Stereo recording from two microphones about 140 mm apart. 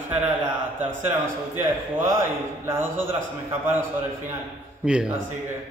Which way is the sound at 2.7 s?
15° right (ahead or behind).